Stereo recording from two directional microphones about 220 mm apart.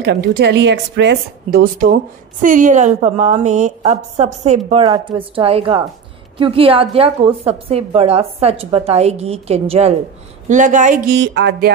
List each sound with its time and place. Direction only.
0.0 s a woman's voice: 50° right (ahead or behind); by 4.8 s 30° right (ahead or behind)
4.8 s a woman's voice: 20° right (ahead or behind)
11.1 s a woman's voice: 50° right (ahead or behind)